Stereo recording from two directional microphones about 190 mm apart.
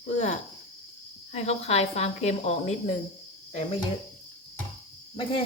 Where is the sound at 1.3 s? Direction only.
35° left (ahead or behind).